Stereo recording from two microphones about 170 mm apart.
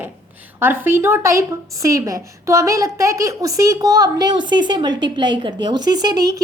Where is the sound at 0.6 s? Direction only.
10° right (ahead or behind).